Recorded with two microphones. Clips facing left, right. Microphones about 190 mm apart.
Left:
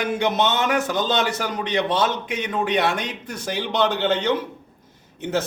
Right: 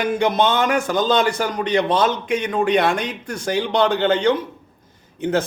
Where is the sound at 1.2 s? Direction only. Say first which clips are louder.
Right 4 dB; 5° left (ahead or behind).